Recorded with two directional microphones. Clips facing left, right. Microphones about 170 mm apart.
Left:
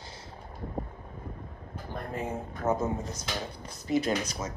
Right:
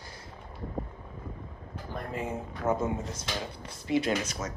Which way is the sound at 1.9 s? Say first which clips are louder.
Even; 10° right (ahead or behind).